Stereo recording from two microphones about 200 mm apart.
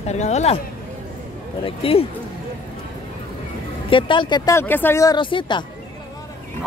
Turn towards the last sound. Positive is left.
turn(degrees=25)  # may be behind; listen again after turning